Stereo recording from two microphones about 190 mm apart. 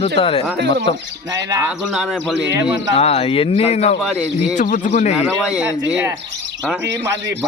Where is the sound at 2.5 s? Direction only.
15° right (ahead or behind).